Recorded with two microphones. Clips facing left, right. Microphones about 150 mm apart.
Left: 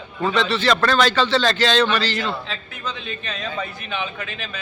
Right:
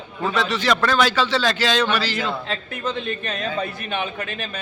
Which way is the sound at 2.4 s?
50° right (ahead or behind).